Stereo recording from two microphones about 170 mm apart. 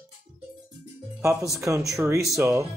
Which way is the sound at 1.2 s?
20° right (ahead or behind).